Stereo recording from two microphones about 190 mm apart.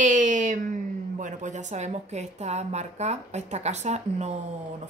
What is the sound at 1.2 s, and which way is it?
Speech, 40° right (ahead or behind).